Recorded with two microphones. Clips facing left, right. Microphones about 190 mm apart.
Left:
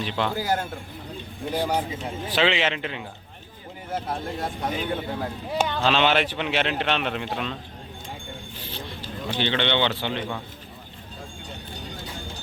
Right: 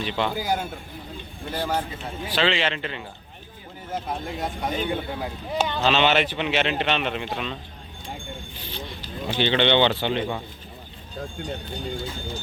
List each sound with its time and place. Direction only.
0.0 s speech: centre (ahead or behind)
4.3 s speech: centre (ahead or behind)
5.5 s speech: 10° left (ahead or behind)
5.8 s speech: 5° right (ahead or behind)
6.1 s speech: 5° left (ahead or behind)
9.4 s speech: 20° right (ahead or behind)